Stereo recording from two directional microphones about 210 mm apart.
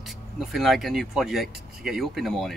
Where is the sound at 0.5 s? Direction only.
Centre (ahead or behind).